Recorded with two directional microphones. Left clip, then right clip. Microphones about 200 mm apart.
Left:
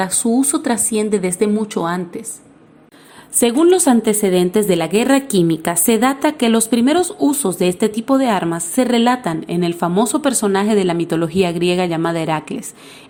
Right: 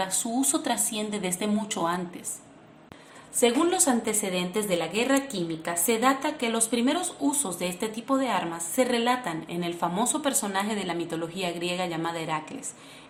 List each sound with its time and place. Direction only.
0.0 s speech: 30° left (ahead or behind)
3.4 s speech: 35° left (ahead or behind)